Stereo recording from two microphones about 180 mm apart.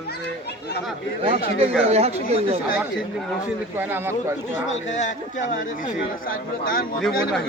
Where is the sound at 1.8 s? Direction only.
35° right (ahead or behind).